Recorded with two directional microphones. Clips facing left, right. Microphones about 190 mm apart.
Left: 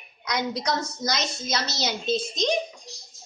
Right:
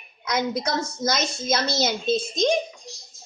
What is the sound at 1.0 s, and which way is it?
A child's voice, 50° right (ahead or behind).